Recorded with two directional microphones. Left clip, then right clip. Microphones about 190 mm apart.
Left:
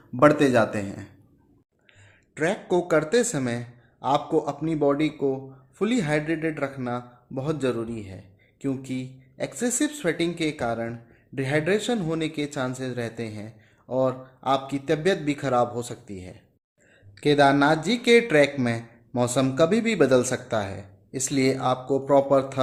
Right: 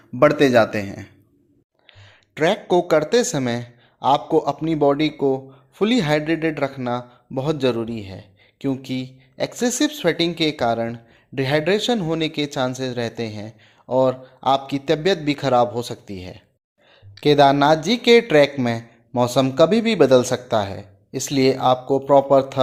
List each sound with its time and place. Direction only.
0.2 s speech: 20° right (ahead or behind)